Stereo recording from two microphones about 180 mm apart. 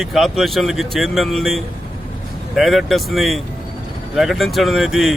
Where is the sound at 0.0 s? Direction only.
Centre (ahead or behind).